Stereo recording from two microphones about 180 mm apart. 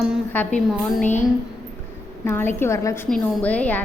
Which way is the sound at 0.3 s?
10° left (ahead or behind).